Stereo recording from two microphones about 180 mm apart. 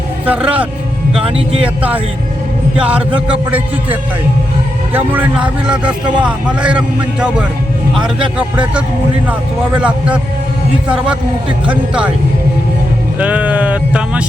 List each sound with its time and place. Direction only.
0.3 s a man's voice: 10° right (ahead or behind)
1.2 s speech: 30° right (ahead or behind)
1.6 s a man's voice: 10° right (ahead or behind)
4.9 s a man's voice: 10° right (ahead or behind)
13.1 s a man's voice: 10° right (ahead or behind)